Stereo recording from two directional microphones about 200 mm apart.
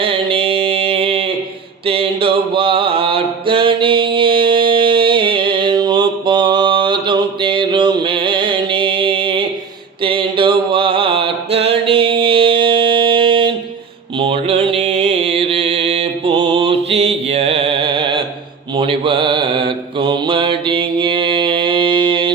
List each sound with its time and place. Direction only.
0.0 s mantra: 30° right (ahead or behind)
14.2 s a sound: 25° right (ahead or behind)
18.8 s mantra: 25° right (ahead or behind)